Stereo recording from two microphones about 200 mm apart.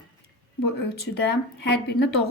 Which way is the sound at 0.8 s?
55° left (ahead or behind).